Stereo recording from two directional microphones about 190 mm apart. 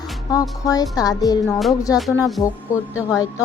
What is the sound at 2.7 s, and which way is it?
Music, 15° left (ahead or behind).